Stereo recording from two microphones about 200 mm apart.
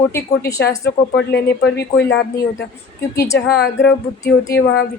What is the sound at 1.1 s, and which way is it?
Speech, 60° left (ahead or behind).